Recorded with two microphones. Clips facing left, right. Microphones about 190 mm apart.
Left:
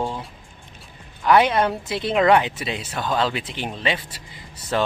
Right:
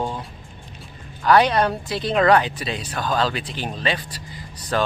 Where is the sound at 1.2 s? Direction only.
20° left (ahead or behind).